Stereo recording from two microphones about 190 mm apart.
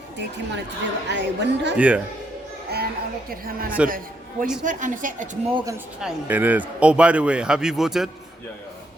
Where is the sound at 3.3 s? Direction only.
50° right (ahead or behind).